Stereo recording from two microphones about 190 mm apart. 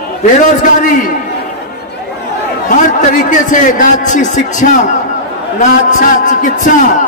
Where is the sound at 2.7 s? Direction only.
40° left (ahead or behind).